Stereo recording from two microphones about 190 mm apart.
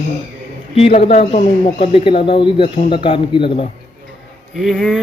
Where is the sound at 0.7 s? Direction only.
30° left (ahead or behind).